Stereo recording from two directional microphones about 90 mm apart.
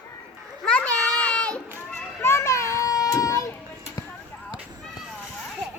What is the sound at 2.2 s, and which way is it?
Children playing, 30° left (ahead or behind).